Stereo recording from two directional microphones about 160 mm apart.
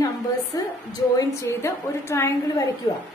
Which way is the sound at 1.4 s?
15° left (ahead or behind).